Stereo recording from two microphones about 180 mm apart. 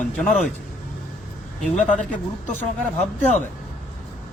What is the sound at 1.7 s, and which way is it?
Speech, 40° left (ahead or behind).